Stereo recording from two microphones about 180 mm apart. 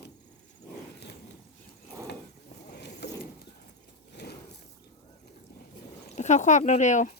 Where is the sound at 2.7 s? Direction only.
70° left (ahead or behind).